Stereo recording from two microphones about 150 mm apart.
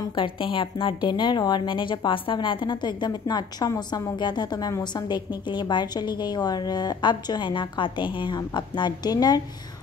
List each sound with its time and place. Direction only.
0.0 s a woman's voice: 35° left (ahead or behind)